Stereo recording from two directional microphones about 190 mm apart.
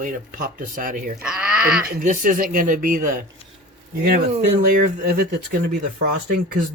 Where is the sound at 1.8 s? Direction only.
45° right (ahead or behind).